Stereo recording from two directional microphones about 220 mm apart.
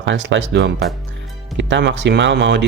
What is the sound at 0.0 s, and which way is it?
Speech, 55° right (ahead or behind).